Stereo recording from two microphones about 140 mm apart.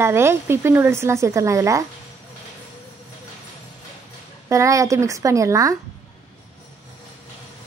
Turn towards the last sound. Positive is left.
turn(degrees=-25)  # may be behind; listen again after turning